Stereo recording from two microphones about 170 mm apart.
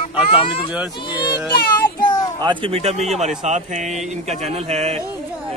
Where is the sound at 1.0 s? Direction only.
25° left (ahead or behind).